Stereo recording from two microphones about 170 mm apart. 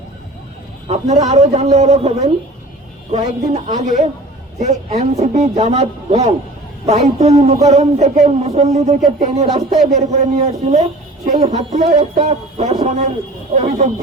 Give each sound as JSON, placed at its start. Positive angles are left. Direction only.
{"t": 0.9, "sound": "a man's voice", "side_deg": -40}